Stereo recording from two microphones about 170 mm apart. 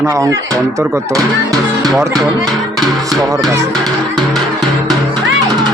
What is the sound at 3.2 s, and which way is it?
Speech, 20° right (ahead or behind).